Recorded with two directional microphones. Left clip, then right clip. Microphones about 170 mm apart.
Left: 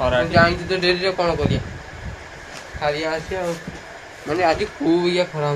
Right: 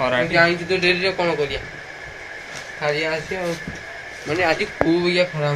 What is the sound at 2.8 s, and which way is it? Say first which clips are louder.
A man's voice: even; 5° left (ahead or behind).